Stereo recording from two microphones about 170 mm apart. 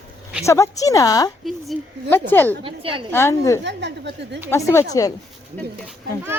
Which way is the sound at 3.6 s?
85° right.